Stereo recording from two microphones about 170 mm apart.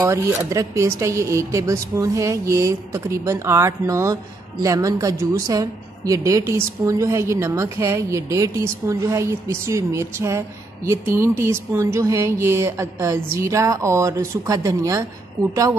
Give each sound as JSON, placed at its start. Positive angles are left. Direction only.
{"t": 0.0, "sound": "speech", "side_deg": -15}